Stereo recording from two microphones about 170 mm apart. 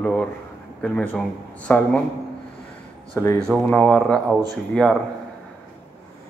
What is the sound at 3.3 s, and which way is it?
Speech, 5° left (ahead or behind).